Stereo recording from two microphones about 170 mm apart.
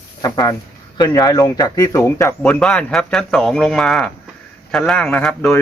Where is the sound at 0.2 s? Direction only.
25° left (ahead or behind).